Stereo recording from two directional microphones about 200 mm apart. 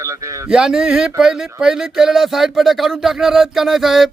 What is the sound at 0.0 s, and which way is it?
Speech, 15° right (ahead or behind).